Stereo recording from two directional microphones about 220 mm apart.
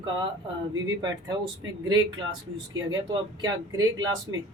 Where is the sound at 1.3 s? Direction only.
20° right (ahead or behind).